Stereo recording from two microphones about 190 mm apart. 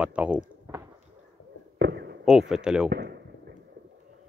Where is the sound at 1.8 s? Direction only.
60° right (ahead or behind).